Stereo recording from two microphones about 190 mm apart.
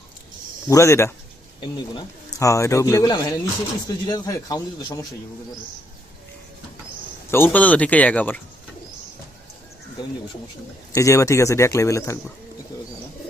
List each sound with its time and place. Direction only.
0.7 s speech: 15° left (ahead or behind)
7.3 s speech: 10° left (ahead or behind)
10.9 s speech: 15° left (ahead or behind)